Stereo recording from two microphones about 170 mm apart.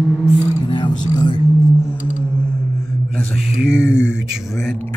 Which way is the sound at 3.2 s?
5° right (ahead or behind).